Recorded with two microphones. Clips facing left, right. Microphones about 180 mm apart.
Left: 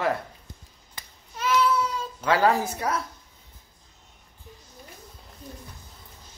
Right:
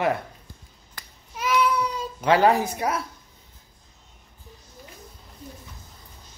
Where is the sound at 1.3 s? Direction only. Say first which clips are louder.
Even; 10° right (ahead or behind).